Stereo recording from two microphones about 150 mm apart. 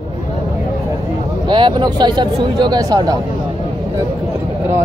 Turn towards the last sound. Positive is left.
turn(degrees=-25)  # may be behind; listen again after turning